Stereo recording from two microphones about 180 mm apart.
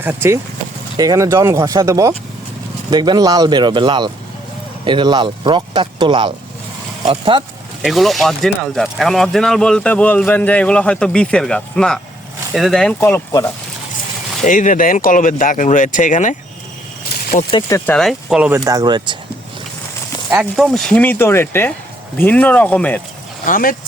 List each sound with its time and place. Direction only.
0.0 s speech: 10° right (ahead or behind); by 7.4 s 30° right (ahead or behind)
7.8 s speech: centre (ahead or behind)
14.4 s speech: 45° left (ahead or behind)
17.3 s speech: 60° left (ahead or behind)
17.7 s speech: 10° left (ahead or behind); by 18.6 s 5° right (ahead or behind)
18.6 s speech: 20° right (ahead or behind)
20.3 s speech: 5° right (ahead or behind)
23.5 s speech: 50° left (ahead or behind)